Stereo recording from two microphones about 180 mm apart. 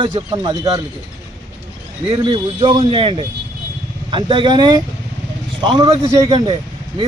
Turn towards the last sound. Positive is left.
turn(degrees=-25)  # may be behind; listen again after turning